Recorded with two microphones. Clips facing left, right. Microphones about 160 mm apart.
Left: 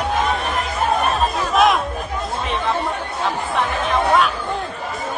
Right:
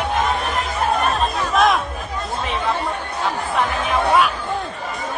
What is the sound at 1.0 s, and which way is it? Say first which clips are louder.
Chatter: left 1 dB; centre (ahead or behind).